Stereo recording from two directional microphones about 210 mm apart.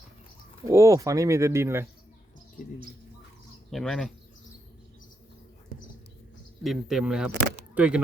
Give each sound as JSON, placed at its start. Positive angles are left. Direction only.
{"t": 0.6, "sound": "speech", "side_deg": -15}
{"t": 3.7, "sound": "speech", "side_deg": 0}
{"t": 6.6, "sound": "speech", "side_deg": 0}